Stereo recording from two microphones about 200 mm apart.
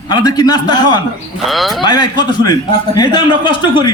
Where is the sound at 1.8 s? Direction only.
20° left (ahead or behind).